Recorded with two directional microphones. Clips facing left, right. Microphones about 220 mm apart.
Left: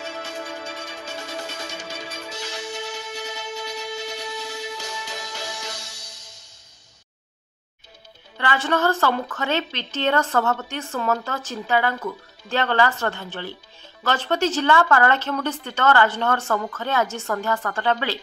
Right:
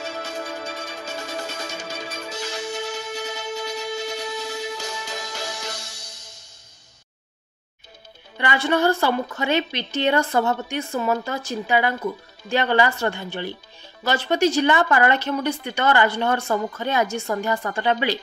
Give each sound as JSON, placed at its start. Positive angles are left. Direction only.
{"t": 0.0, "sound": "music", "side_deg": -40}
{"t": 8.4, "sound": "a woman's voice", "side_deg": -15}